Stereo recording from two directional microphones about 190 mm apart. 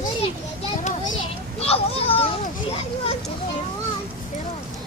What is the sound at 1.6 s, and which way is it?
Children playing, 30° left (ahead or behind).